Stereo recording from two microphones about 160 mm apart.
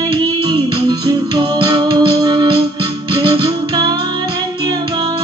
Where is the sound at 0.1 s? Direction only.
25° right (ahead or behind).